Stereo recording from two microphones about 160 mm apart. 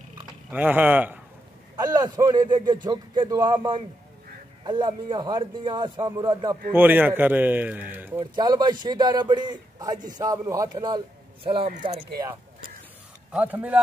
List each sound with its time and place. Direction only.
0.5 s a man's voice: 10° right (ahead or behind)
1.8 s a man's voice: 25° right (ahead or behind)
6.7 s a man's voice: 10° right (ahead or behind)
8.4 s a man's voice: 25° right (ahead or behind)
13.3 s a man's voice: 10° right (ahead or behind)